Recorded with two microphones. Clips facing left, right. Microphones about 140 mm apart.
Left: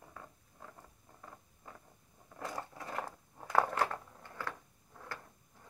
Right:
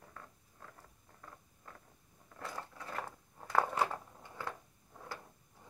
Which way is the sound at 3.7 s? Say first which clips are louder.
Even; 10° right (ahead or behind).